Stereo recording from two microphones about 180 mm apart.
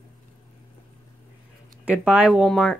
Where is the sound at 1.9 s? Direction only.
5° right (ahead or behind).